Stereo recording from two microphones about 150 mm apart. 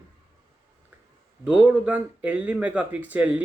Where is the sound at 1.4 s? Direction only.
10° right (ahead or behind).